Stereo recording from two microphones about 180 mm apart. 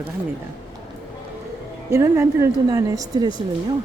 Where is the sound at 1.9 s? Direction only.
15° right (ahead or behind).